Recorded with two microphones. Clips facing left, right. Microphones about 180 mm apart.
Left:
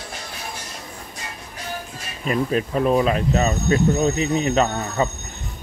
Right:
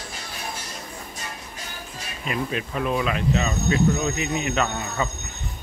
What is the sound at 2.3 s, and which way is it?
Speech, 35° left (ahead or behind).